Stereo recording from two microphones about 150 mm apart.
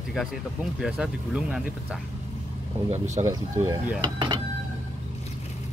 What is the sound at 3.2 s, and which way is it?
Speech, 35° right (ahead or behind).